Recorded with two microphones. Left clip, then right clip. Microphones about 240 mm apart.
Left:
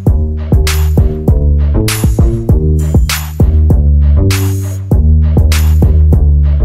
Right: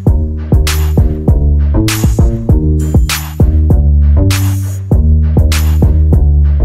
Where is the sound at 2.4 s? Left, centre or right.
Centre.